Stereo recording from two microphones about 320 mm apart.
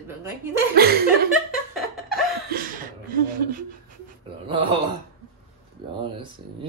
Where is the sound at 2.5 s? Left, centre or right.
Right.